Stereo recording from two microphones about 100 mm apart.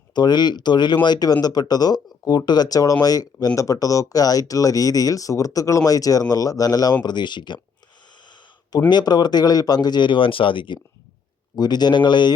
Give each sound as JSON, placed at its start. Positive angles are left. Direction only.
{"t": 0.1, "sound": "speech", "side_deg": 45}
{"t": 8.2, "sound": "a sound", "side_deg": 50}
{"t": 8.9, "sound": "speech", "side_deg": 45}
{"t": 11.5, "sound": "speech", "side_deg": 45}